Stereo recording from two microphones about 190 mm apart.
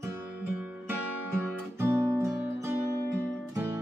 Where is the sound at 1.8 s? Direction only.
15° right (ahead or behind).